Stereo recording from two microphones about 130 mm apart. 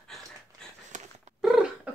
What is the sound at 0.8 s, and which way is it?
Dog, 70° right (ahead or behind).